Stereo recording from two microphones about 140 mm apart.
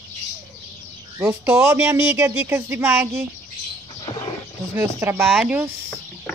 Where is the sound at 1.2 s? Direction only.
15° right (ahead or behind).